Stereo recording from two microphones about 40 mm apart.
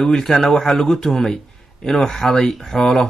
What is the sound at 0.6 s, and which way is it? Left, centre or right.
Speech, centre.